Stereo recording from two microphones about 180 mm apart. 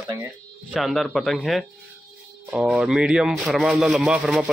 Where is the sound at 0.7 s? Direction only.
Centre (ahead or behind).